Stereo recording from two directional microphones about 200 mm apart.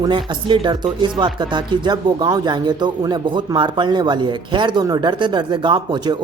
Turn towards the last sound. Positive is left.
turn(degrees=-20)  # may be behind; listen again after turning